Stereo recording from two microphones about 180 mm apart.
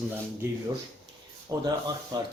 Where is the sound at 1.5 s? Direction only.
15° right (ahead or behind).